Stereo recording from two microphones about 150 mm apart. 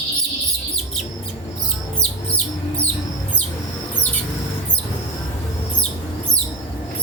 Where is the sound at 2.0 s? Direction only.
5° left (ahead or behind).